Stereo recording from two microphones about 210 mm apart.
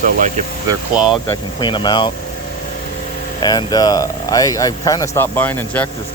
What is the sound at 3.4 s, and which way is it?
Speech, 20° left (ahead or behind).